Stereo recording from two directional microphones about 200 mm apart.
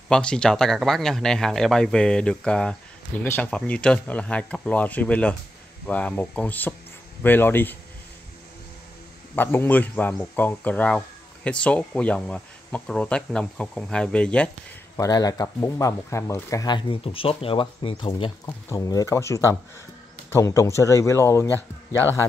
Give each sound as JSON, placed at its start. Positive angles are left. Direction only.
{"t": 0.1, "sound": "a man's voice", "side_deg": 5}
{"t": 9.3, "sound": "a man's voice", "side_deg": 10}
{"t": 15.0, "sound": "speech", "side_deg": 20}
{"t": 18.4, "sound": "speech", "side_deg": 15}